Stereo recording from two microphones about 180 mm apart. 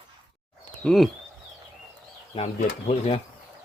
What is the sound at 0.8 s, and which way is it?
Speech, centre (ahead or behind).